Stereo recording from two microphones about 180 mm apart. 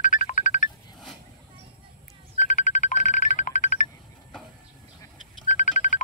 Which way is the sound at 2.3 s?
40° left (ahead or behind).